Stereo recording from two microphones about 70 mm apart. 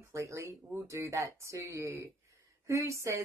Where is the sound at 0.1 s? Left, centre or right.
Right.